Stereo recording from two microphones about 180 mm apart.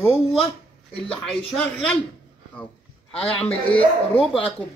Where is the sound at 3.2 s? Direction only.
30° left (ahead or behind).